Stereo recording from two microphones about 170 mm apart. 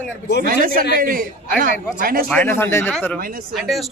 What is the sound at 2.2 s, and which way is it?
Speech, 10° left (ahead or behind).